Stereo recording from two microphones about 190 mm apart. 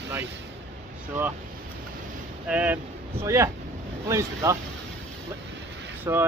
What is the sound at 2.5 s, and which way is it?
Speech, 10° right (ahead or behind).